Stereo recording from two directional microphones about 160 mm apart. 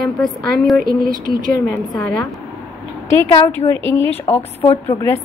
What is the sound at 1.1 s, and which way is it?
Speech, 60° right (ahead or behind).